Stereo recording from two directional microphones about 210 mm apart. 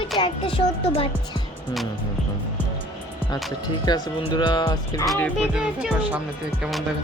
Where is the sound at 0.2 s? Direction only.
25° left (ahead or behind).